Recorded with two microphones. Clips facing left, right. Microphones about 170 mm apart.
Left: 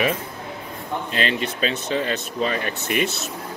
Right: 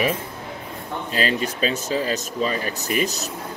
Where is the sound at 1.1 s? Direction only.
35° right (ahead or behind).